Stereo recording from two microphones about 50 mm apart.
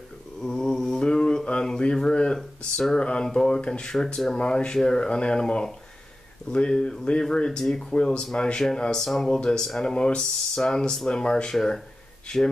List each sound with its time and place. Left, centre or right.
0.4 s mantra: centre
2.3 s speech: centre
3.0 s speech: left; by 9.4 s centre
9.4 s speech: centre